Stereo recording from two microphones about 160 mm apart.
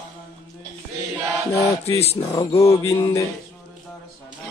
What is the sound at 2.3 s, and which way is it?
Mantra, 20° left (ahead or behind).